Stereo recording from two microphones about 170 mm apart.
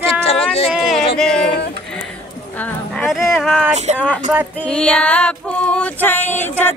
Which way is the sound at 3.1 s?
Centre (ahead or behind).